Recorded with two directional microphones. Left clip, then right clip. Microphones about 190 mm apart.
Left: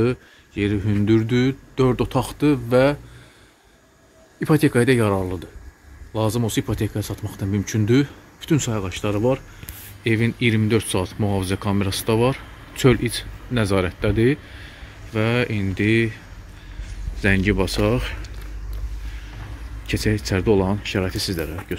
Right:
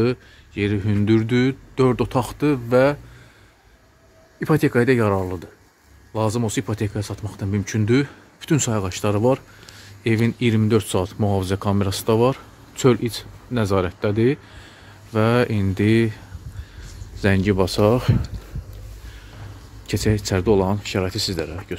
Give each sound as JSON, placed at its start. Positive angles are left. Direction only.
{"t": 0.0, "sound": "speech", "side_deg": -15}
{"t": 4.4, "sound": "speech", "side_deg": -15}
{"t": 8.4, "sound": "speech", "side_deg": -30}
{"t": 10.0, "sound": "speech", "side_deg": -20}
{"t": 15.1, "sound": "speech", "side_deg": -30}
{"t": 19.9, "sound": "speech", "side_deg": -20}